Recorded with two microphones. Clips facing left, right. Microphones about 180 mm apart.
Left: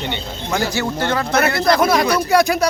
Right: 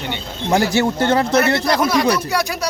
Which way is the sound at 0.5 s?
25° right (ahead or behind).